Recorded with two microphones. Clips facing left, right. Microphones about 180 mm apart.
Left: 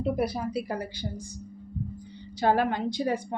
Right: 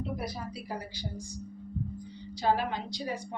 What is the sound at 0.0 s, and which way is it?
Speech, 60° left (ahead or behind).